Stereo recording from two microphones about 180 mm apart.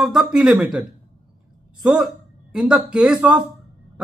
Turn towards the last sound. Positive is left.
turn(degrees=-5)  # may be behind; listen again after turning